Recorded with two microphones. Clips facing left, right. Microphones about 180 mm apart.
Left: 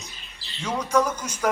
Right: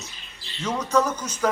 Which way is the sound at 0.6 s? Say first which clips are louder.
Even; 10° left (ahead or behind).